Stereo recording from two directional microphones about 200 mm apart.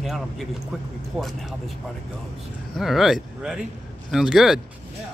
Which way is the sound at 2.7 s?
Centre (ahead or behind).